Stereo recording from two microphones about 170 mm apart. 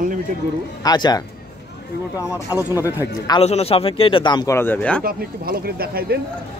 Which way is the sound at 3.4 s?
35° left (ahead or behind).